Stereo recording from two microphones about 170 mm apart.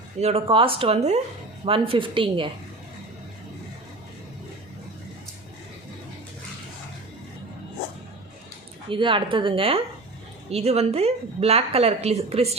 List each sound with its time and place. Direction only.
0.2 s a woman's voice: 35° right (ahead or behind)
8.9 s a woman's voice: 30° right (ahead or behind)